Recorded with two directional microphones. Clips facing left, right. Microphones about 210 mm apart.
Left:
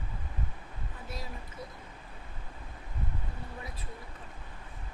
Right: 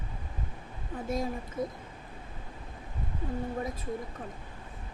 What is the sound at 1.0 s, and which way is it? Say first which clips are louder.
Speech: right 12 dB; 50° right (ahead or behind).